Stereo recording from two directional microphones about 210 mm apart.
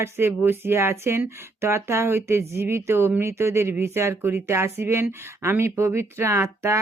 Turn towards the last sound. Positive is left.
turn(degrees=-15)  # may be behind; listen again after turning